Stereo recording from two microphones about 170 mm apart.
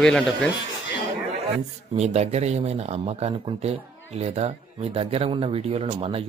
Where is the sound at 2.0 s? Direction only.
40° right (ahead or behind).